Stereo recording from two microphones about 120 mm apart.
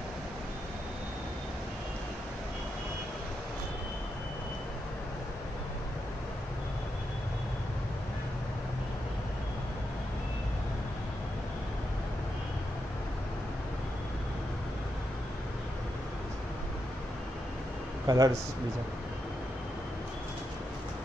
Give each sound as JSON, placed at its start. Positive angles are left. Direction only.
{"t": 18.0, "sound": "speech", "side_deg": -30}